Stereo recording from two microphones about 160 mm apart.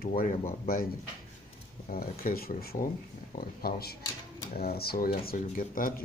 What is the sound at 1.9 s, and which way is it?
Speech, 65° left (ahead or behind).